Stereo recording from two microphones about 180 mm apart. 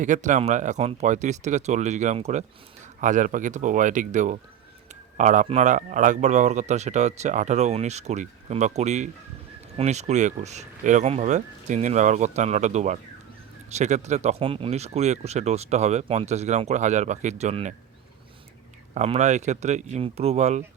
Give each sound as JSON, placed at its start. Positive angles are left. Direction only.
{"t": 0.0, "sound": "speech", "side_deg": -45}
{"t": 18.9, "sound": "speech", "side_deg": -40}